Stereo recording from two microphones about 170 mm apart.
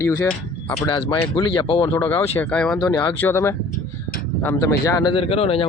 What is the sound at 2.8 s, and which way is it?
A man's voice, 25° left (ahead or behind).